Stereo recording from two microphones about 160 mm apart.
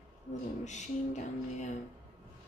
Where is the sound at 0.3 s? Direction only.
45° left (ahead or behind).